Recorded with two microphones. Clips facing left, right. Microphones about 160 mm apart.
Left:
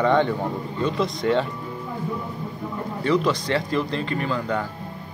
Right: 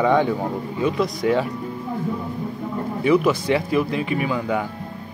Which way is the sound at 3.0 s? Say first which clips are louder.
Right 4 dB; 10° right (ahead or behind).